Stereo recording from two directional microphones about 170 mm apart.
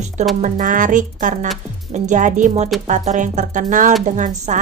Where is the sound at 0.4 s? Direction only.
50° right (ahead or behind).